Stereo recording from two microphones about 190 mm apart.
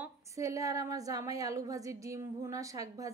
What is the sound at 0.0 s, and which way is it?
A woman's voice, 15° right (ahead or behind).